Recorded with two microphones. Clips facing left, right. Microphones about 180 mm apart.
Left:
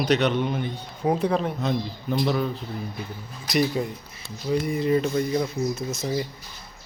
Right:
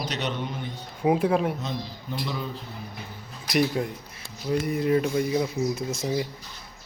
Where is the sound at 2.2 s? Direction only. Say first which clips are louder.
Left 8 dB; 65° left (ahead or behind).